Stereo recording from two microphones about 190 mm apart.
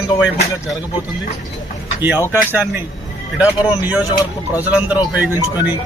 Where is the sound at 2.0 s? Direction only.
10° right (ahead or behind).